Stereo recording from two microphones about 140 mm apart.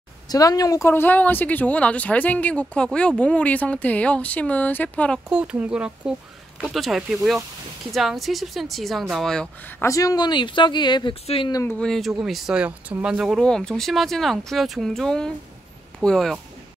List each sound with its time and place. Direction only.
0.3 s speech: 25° left (ahead or behind); by 5.2 s 10° left (ahead or behind)
5.3 s speech: 10° right (ahead or behind)
9.8 s speech: 25° left (ahead or behind)
11.8 s speech: centre (ahead or behind)